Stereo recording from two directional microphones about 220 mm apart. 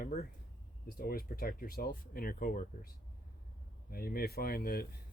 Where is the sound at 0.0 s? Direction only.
40° left (ahead or behind).